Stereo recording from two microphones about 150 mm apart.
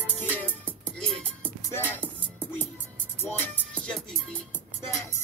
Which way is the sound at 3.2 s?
10° left (ahead or behind).